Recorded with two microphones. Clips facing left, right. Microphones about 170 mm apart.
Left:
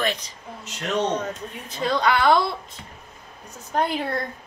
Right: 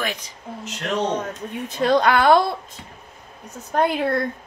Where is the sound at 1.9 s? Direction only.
50° right (ahead or behind).